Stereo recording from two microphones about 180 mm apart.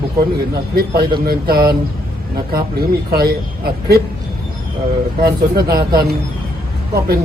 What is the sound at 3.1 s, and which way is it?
Speech, 60° right (ahead or behind).